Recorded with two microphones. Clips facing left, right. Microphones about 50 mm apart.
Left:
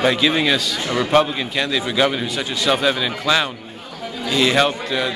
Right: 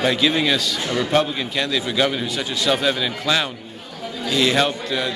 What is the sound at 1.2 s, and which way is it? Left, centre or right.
Speech, centre.